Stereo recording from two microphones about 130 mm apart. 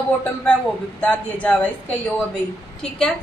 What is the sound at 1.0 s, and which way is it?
Speech, 10° left (ahead or behind).